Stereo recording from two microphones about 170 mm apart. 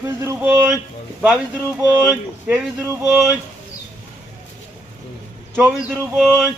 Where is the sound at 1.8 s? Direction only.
15° right (ahead or behind).